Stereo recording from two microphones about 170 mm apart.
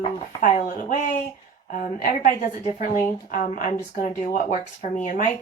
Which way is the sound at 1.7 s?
55° left (ahead or behind).